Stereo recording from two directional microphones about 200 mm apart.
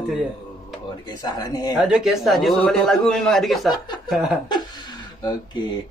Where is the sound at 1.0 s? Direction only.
20° left (ahead or behind).